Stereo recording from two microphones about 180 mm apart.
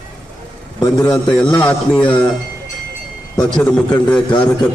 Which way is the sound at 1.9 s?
5° left (ahead or behind).